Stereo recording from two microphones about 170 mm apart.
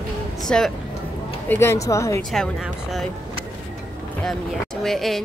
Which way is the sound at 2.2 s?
Centre (ahead or behind).